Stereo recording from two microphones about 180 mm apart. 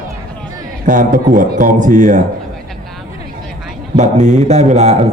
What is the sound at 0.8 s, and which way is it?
A man's voice, 45° right (ahead or behind).